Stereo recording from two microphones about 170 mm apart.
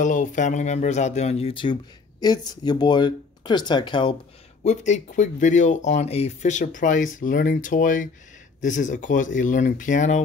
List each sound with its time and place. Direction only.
0.0 s speech: 45° left (ahead or behind); by 4.2 s 30° left (ahead or behind)
4.6 s speech: 45° left (ahead or behind)